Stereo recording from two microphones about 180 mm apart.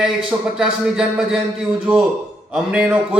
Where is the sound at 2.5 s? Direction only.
5° right (ahead or behind).